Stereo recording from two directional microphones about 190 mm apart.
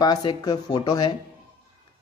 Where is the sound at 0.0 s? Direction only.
20° left (ahead or behind).